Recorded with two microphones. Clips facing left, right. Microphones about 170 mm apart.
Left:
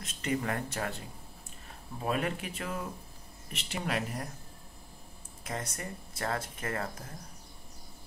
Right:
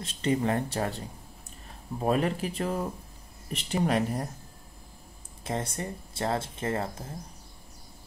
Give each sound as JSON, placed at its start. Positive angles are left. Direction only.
{"t": 0.0, "sound": "speech", "side_deg": -30}
{"t": 5.4, "sound": "speech", "side_deg": -30}